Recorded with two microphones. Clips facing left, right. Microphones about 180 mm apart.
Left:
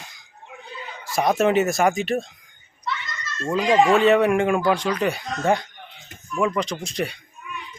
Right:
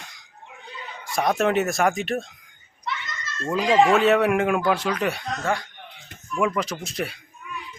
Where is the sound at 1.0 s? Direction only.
Centre (ahead or behind).